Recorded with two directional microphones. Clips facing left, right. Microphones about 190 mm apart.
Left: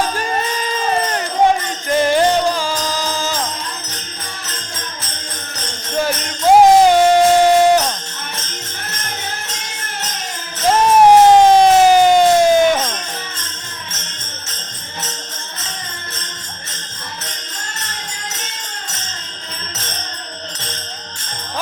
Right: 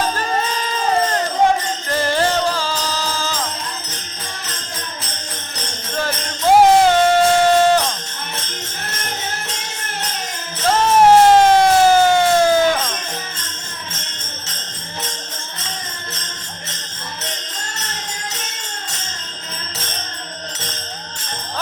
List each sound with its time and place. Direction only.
1.9 s music: 15° left (ahead or behind)
6.6 s music: 15° left (ahead or behind)
10.7 s a sound: 15° left (ahead or behind)